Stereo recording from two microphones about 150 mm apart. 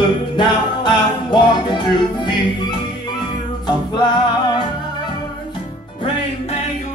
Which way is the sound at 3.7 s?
30° left (ahead or behind).